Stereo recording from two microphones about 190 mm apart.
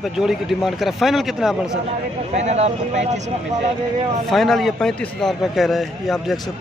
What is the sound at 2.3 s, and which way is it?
Speech, 35° right (ahead or behind).